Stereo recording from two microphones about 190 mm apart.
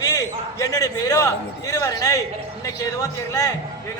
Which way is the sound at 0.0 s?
20° left (ahead or behind).